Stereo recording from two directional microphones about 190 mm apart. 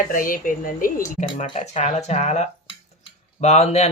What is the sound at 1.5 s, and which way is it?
Speech, 30° left (ahead or behind).